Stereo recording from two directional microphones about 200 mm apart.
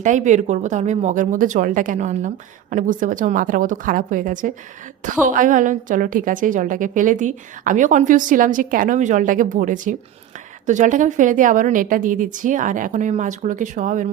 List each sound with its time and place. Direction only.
0.0 s a woman's voice: 40° right (ahead or behind)